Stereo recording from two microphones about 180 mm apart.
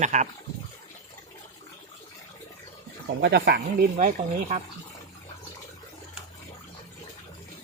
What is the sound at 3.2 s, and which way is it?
Speech, 65° right (ahead or behind).